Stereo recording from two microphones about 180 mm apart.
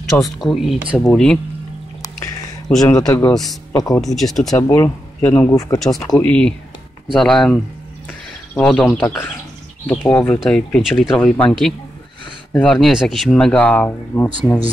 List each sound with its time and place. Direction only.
0.2 s speech: centre (ahead or behind)
2.7 s speech: 5° left (ahead or behind)
4.0 s speech: centre (ahead or behind)
4.5 s speech: 15° left (ahead or behind)
6.1 s speech: 5° left (ahead or behind)
8.1 s a sound: 10° left (ahead or behind)
9.0 s speech: 15° left (ahead or behind)